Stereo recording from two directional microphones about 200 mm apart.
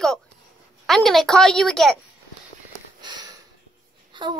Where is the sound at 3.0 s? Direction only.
20° right (ahead or behind).